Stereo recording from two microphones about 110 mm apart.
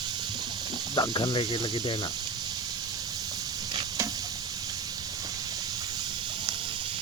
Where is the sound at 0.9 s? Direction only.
45° left (ahead or behind).